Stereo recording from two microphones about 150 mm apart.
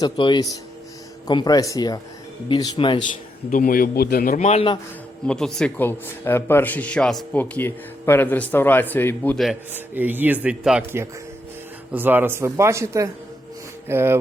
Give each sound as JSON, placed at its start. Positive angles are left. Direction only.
{"t": 0.0, "sound": "speech", "side_deg": 30}
{"t": 3.5, "sound": "a man's voice", "side_deg": 70}
{"t": 4.4, "sound": "speech", "side_deg": 45}
{"t": 5.2, "sound": "a man's voice", "side_deg": 5}
{"t": 9.7, "sound": "speech", "side_deg": -10}
{"t": 11.9, "sound": "speech", "side_deg": -15}